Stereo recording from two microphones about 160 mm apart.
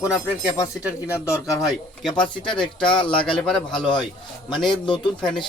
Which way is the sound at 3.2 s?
5° left (ahead or behind).